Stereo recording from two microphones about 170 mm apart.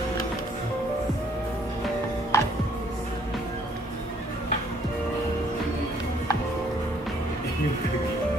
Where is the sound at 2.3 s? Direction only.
15° left (ahead or behind).